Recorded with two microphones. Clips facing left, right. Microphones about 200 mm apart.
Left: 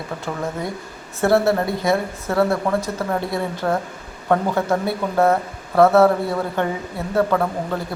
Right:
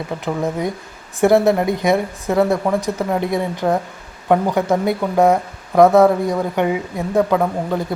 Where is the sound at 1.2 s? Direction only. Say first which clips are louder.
Right 4 dB; 15° right (ahead or behind).